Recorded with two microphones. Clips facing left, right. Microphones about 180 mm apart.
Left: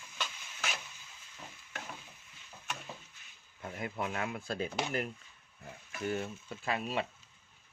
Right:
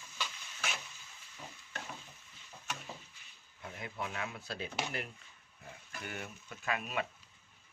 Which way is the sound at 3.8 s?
50° left (ahead or behind).